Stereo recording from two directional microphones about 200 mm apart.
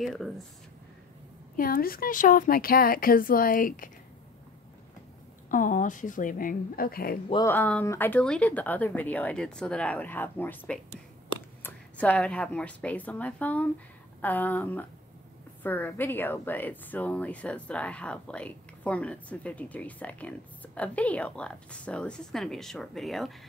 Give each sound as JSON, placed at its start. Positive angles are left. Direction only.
{"t": 0.0, "sound": "speech", "side_deg": 0}
{"t": 1.6, "sound": "a woman's voice", "side_deg": 45}
{"t": 5.5, "sound": "a woman's voice", "side_deg": 40}
{"t": 7.4, "sound": "speech", "side_deg": 10}